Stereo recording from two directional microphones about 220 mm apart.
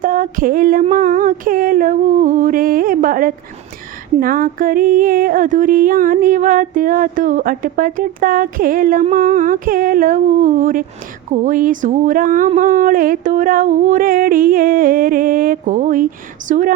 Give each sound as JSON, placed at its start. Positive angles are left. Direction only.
{"t": 0.0, "sound": "music", "side_deg": -40}